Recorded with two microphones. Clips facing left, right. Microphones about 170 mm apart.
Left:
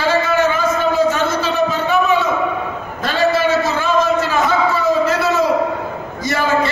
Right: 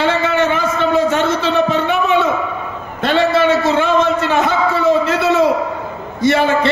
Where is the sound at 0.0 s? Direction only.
70° right (ahead or behind).